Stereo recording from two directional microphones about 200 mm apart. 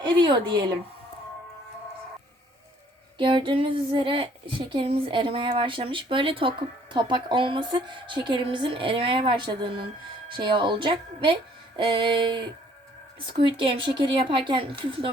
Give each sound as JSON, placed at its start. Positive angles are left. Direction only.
{"t": 0.0, "sound": "a woman's voice", "side_deg": -25}
{"t": 3.2, "sound": "a woman's voice", "side_deg": -25}